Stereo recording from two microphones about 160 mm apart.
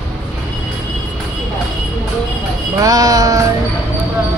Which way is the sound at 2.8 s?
20° right (ahead or behind).